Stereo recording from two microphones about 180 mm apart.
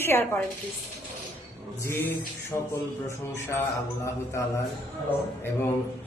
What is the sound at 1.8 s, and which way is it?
Speech, 15° left (ahead or behind).